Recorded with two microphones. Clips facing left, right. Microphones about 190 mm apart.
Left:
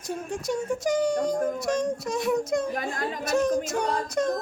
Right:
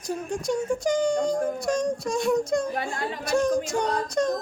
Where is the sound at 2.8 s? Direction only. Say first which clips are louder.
Right 1 dB; 40° left (ahead or behind).